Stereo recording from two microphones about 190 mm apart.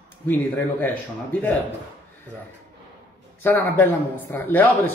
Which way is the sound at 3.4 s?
10° left (ahead or behind).